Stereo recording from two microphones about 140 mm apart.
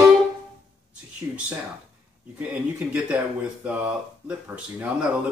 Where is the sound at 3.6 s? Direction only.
10° right (ahead or behind).